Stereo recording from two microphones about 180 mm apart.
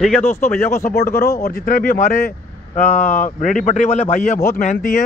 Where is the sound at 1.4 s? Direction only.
50° left (ahead or behind).